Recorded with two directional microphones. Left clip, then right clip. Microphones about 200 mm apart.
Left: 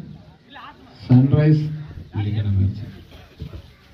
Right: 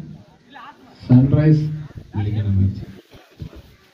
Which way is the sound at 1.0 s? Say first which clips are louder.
Right 2 dB; 20° right (ahead or behind).